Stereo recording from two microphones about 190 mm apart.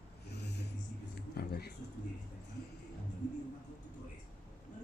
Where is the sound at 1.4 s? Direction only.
55° left (ahead or behind).